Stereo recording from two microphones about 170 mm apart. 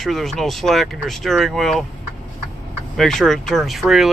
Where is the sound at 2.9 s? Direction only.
Centre (ahead or behind).